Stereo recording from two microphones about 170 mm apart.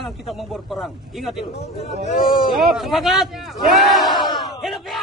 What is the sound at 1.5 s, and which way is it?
Speech, 75° left (ahead or behind).